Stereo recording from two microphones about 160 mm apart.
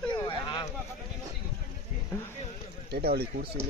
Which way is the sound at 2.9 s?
80° right.